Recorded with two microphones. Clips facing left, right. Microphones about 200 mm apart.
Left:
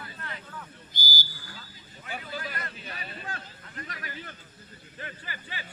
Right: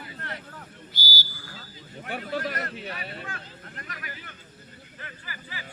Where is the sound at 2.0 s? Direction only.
65° right (ahead or behind).